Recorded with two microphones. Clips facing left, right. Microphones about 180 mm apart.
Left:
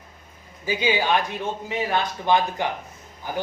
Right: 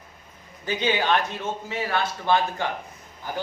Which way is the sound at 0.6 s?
10° left (ahead or behind).